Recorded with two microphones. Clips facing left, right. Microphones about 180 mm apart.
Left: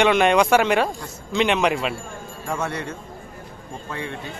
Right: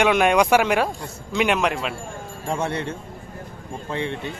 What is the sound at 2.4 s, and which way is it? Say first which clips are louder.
Speech: right 2 dB; 25° right (ahead or behind).